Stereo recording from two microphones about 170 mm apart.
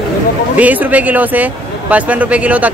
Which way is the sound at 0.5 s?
10° right (ahead or behind).